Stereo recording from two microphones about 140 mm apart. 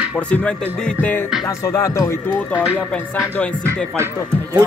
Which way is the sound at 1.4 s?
25° left (ahead or behind).